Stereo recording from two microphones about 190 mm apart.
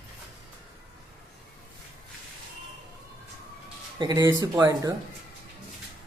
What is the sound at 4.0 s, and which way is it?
Speech, 20° right (ahead or behind).